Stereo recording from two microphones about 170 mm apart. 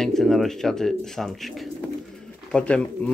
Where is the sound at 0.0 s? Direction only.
Centre (ahead or behind).